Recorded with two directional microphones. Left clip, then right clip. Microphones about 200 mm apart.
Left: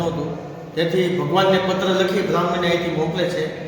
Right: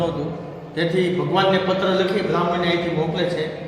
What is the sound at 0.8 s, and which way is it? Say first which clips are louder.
Speech: left 1 dB; 10° right (ahead or behind).